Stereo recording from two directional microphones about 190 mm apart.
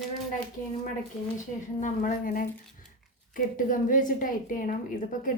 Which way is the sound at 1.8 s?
45° left (ahead or behind).